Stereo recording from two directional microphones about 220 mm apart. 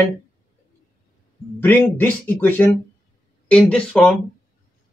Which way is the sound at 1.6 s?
10° left (ahead or behind).